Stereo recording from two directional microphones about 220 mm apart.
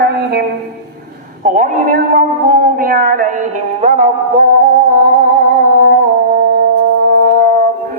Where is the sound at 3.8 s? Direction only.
30° right (ahead or behind).